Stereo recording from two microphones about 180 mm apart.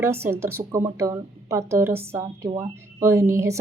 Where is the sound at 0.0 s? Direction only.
15° right (ahead or behind).